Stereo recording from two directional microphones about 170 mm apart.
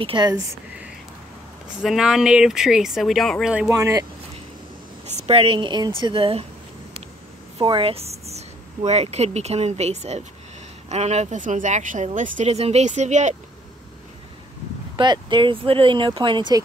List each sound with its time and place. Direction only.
0.0 s speech: 25° right (ahead or behind)
1.8 s speech: 5° right (ahead or behind)
3.5 s speech: 15° right (ahead or behind)
5.0 s speech: 40° right (ahead or behind)
7.5 s speech: 30° right (ahead or behind)
15.0 s speech: 30° right (ahead or behind)